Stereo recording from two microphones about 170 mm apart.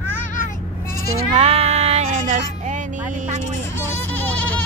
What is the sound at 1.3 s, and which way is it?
Child singing, 35° right (ahead or behind).